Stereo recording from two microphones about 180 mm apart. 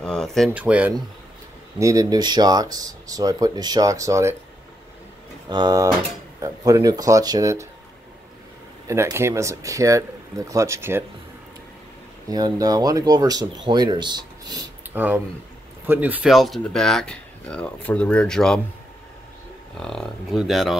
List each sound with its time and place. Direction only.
0.0 s a sound: 5° left (ahead or behind)
0.5 s speech: 5° right (ahead or behind)
1.8 s speech: 20° right (ahead or behind)
5.5 s speech: 25° right (ahead or behind)
8.8 s speech: 15° right (ahead or behind)
12.3 s speech: 20° right (ahead or behind)
14.9 s speech: 10° right (ahead or behind)
19.8 s speech: 5° left (ahead or behind)